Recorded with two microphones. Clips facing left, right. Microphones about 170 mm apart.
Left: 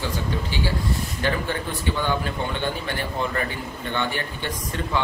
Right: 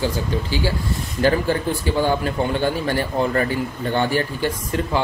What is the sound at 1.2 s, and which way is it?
A man's voice, 35° right (ahead or behind).